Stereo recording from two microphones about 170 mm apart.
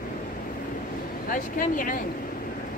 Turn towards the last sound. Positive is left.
turn(degrees=50)  # may be behind; listen again after turning